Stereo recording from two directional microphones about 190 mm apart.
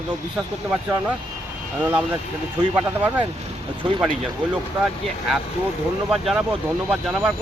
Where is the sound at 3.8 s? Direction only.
30° right (ahead or behind).